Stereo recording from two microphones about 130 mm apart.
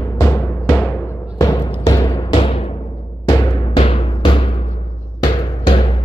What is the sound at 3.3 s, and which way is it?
Music, 35° left (ahead or behind).